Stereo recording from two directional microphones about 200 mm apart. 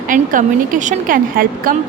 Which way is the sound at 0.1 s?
40° right (ahead or behind).